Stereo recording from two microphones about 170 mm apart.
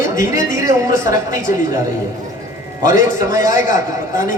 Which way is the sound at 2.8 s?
50° left (ahead or behind).